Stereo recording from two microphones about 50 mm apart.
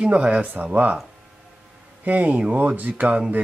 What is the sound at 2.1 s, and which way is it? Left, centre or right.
Speech, right.